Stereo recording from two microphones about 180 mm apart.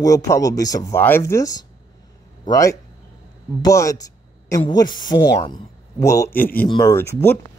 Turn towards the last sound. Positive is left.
turn(degrees=15)  # may be behind; listen again after turning